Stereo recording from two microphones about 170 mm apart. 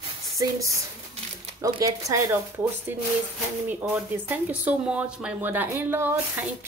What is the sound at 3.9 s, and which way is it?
Speech, 10° right (ahead or behind).